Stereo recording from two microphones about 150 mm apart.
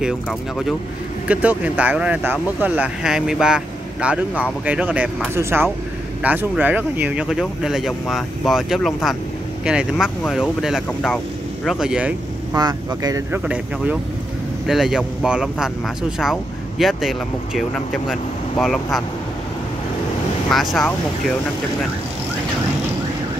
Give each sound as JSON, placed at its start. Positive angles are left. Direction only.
{"t": 0.0, "sound": "speech", "side_deg": 0}
{"t": 12.5, "sound": "speech", "side_deg": -25}
{"t": 13.3, "sound": "speech", "side_deg": -10}
{"t": 20.4, "sound": "speech", "side_deg": 0}